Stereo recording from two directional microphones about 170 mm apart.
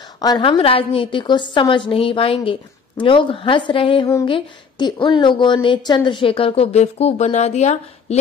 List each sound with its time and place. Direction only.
0.2 s a woman's voice: 25° left (ahead or behind); by 8.2 s 45° left (ahead or behind)